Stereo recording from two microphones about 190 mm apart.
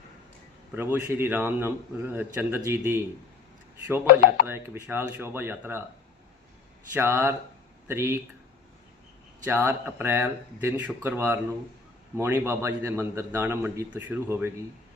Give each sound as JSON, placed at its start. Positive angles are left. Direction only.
{"t": 0.8, "sound": "a man's voice", "side_deg": -15}
{"t": 4.0, "sound": "speech", "side_deg": 50}
{"t": 4.4, "sound": "a man's voice", "side_deg": -10}
{"t": 6.9, "sound": "a man's voice", "side_deg": -10}
{"t": 9.4, "sound": "a man's voice", "side_deg": -10}